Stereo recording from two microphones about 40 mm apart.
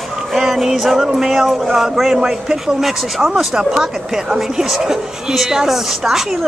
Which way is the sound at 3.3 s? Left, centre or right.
Centre.